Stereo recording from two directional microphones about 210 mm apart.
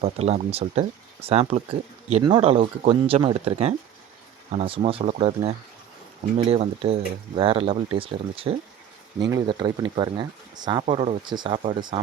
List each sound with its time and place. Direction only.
0.0 s speech: 30° right (ahead or behind)
10.8 s speech: 30° right (ahead or behind)